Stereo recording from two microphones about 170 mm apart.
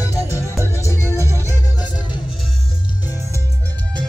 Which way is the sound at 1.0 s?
15° right (ahead or behind).